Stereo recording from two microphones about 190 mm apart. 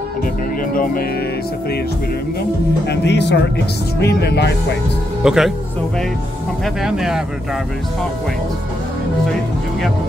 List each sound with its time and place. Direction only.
2.9 s speech: 65° left (ahead or behind)
5.2 s speech: centre (ahead or behind)
6.6 s speech: centre (ahead or behind)